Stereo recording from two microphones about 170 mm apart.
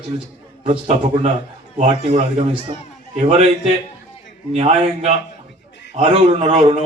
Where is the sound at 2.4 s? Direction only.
30° right (ahead or behind).